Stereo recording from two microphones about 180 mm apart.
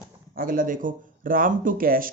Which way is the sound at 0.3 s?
50° right (ahead or behind).